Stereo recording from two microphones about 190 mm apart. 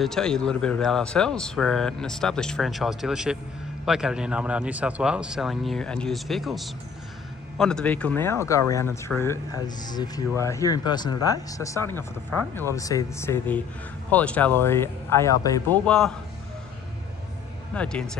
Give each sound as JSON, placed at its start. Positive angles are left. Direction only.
{"t": 0.0, "sound": "speech", "side_deg": 5}
{"t": 17.7, "sound": "speech", "side_deg": 5}